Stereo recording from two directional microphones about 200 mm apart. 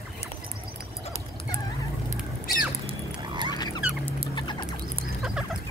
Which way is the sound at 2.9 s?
20° right (ahead or behind).